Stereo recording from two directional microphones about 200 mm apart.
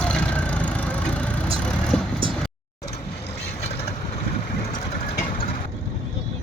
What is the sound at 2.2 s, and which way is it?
Vehicle, 25° right (ahead or behind).